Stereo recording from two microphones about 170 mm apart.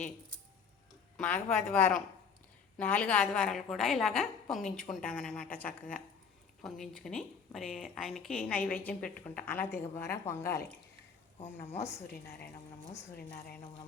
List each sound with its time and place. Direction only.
1.2 s a woman's voice: 5° left (ahead or behind)
11.3 s speech: 40° left (ahead or behind)
11.7 s a woman's voice: 15° left (ahead or behind)
12.0 s a woman's voice: 70° left (ahead or behind)